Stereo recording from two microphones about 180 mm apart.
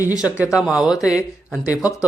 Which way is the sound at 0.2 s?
5° right (ahead or behind).